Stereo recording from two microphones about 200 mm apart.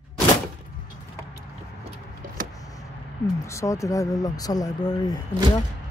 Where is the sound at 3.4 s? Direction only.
15° left (ahead or behind).